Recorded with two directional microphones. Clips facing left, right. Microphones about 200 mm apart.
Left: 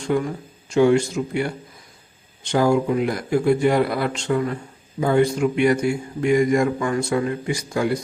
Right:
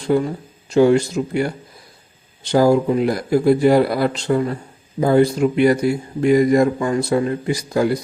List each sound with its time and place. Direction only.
0.1 s speech: 35° right (ahead or behind)